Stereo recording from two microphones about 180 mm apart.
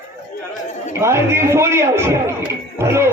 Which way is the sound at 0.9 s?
15° right (ahead or behind).